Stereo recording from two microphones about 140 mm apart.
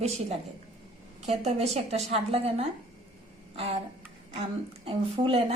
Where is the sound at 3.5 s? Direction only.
45° right (ahead or behind).